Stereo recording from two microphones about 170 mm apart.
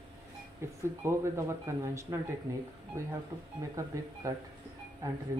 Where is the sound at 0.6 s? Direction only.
15° right (ahead or behind).